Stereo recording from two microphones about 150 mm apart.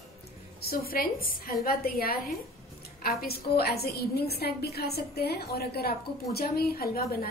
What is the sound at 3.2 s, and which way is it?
A woman's voice, 90° left.